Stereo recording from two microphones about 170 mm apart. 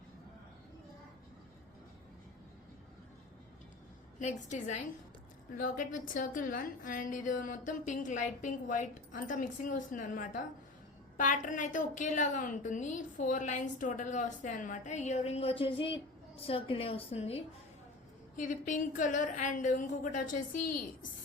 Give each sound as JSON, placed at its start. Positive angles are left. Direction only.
{"t": 4.2, "sound": "a woman's voice", "side_deg": 45}
{"t": 18.3, "sound": "a woman's voice", "side_deg": 50}